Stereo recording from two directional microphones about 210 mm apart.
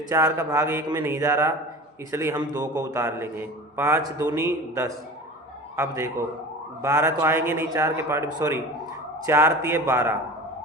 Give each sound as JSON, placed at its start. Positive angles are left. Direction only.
{"t": 0.1, "sound": "a man's voice", "side_deg": -15}